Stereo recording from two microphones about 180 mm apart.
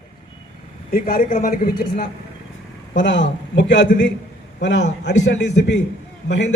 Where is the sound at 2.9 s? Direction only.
85° left.